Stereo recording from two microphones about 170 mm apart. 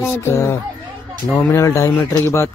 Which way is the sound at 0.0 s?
15° left (ahead or behind).